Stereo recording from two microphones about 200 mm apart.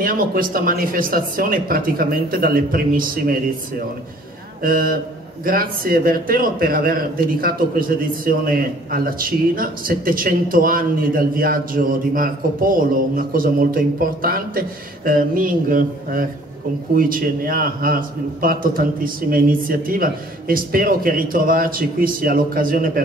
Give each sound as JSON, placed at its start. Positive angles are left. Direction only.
{"t": 0.0, "sound": "a man's voice", "side_deg": -45}
{"t": 4.6, "sound": "a man's voice", "side_deg": -45}